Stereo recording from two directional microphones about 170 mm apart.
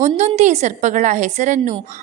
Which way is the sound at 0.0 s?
45° right (ahead or behind).